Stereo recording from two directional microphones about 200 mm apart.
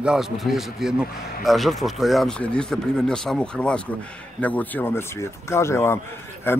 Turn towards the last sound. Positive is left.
turn(degrees=10)  # may be behind; listen again after turning